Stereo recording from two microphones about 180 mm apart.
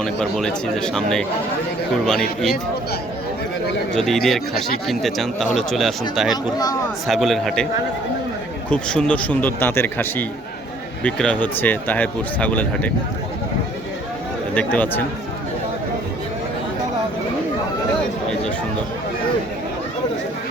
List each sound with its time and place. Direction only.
0.0 s speech: 5° left (ahead or behind)
3.9 s speech: centre (ahead or behind)
6.3 s speech: 20° left (ahead or behind)
7.1 s speech: centre (ahead or behind)
8.7 s speech: 5° left (ahead or behind)
14.5 s speech: 10° left (ahead or behind)